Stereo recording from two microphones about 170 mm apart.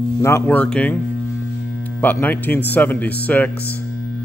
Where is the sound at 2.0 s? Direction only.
10° left (ahead or behind).